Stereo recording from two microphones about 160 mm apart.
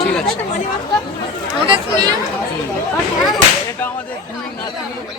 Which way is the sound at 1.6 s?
30° right (ahead or behind).